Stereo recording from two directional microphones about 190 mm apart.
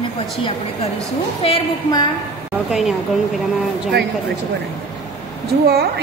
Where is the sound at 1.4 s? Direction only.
25° left (ahead or behind).